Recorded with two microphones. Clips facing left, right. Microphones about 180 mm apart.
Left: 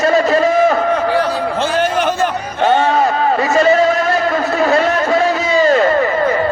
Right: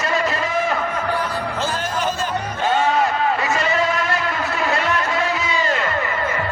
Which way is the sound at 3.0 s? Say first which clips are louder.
Left 5 dB; 40° left (ahead or behind).